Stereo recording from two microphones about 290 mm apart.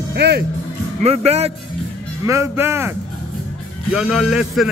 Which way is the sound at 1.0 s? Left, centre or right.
Right.